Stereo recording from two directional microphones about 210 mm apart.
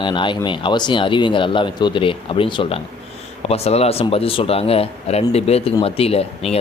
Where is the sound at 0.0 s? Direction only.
20° left (ahead or behind).